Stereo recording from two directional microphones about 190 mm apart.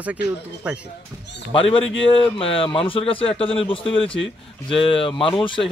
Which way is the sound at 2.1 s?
30° left (ahead or behind).